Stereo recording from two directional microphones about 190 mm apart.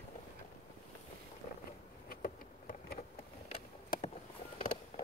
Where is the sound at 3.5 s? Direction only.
30° left (ahead or behind).